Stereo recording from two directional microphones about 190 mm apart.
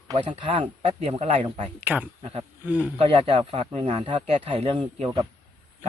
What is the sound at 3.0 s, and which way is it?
Speech, 30° right (ahead or behind).